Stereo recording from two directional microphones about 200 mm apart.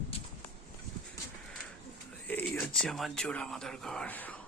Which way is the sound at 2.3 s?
10° left (ahead or behind).